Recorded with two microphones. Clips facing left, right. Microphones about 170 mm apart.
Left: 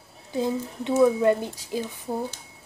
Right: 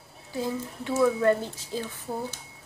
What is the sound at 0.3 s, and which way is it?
Speech, 20° left (ahead or behind).